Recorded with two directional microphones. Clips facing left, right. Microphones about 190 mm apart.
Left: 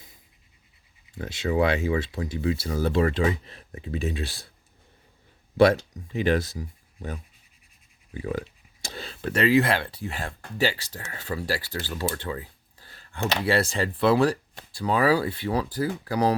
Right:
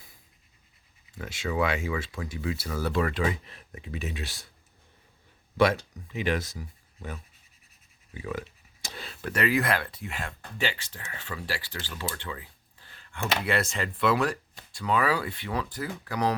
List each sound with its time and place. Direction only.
1.2 s speech: 30° left (ahead or behind)
5.5 s speech: 30° left (ahead or behind)
8.2 s speech: 35° left (ahead or behind)